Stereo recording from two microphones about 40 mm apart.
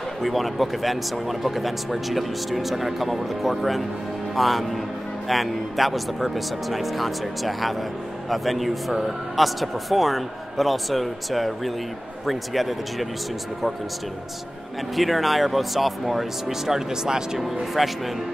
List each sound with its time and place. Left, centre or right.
0.2 s speech: centre
15.0 s speech: centre
17.7 s speech: centre